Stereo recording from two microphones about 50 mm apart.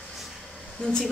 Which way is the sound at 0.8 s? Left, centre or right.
Centre.